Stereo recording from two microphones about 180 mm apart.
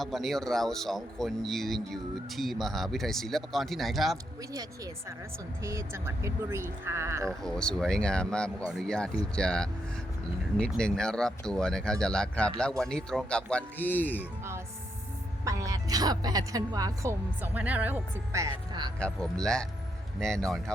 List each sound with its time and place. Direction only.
0.0 s speech: centre (ahead or behind)
5.6 s a woman's voice: 15° right (ahead or behind)
7.4 s speech: 5° left (ahead or behind)
15.4 s a woman's voice: 20° right (ahead or behind)
18.9 s speech: 5° left (ahead or behind)